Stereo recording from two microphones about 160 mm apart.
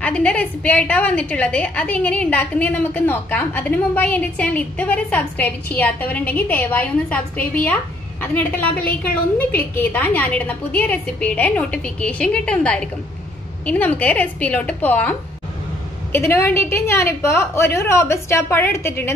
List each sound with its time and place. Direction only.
0.0 s a woman's voice: 5° left (ahead or behind)